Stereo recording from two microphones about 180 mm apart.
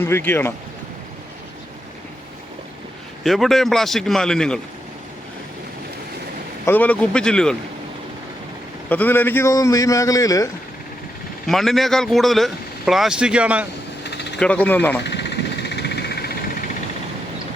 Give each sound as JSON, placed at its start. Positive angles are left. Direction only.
{"t": 0.0, "sound": "a man's voice", "side_deg": 10}
{"t": 3.2, "sound": "speech", "side_deg": 0}
{"t": 6.7, "sound": "speech", "side_deg": 10}
{"t": 8.9, "sound": "a man's voice", "side_deg": 10}
{"t": 11.4, "sound": "speech", "side_deg": 0}
{"t": 14.0, "sound": "a sound", "side_deg": 70}
{"t": 14.3, "sound": "a man's voice", "side_deg": 5}
{"t": 15.0, "sound": "vehicle", "side_deg": 70}